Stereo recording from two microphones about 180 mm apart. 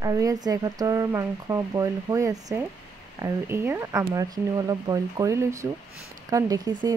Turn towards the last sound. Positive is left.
turn(degrees=-20)  # may be behind; listen again after turning